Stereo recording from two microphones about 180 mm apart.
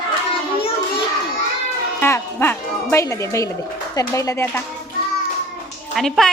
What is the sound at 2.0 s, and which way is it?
Speech, 10° left (ahead or behind).